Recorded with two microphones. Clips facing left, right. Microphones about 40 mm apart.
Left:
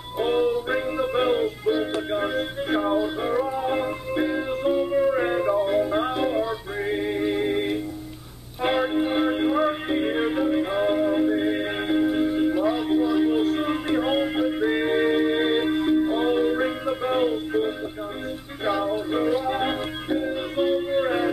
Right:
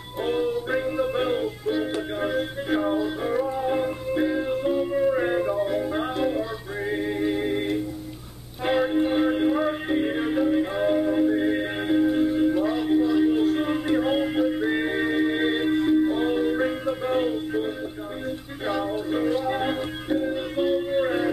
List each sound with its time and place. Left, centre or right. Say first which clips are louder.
0.2 s music: left 3 dB; centre
18.7 s music: left 2 dB; centre